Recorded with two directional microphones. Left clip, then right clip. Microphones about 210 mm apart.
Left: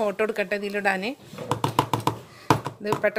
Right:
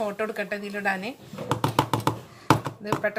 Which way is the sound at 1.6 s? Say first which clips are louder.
Left 1 dB; 10° right (ahead or behind).